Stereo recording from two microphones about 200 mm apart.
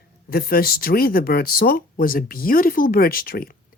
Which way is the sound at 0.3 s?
50° left (ahead or behind).